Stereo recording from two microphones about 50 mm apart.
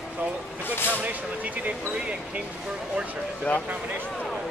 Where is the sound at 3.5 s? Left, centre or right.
Left.